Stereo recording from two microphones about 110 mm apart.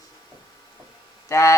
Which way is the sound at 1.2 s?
30° left (ahead or behind).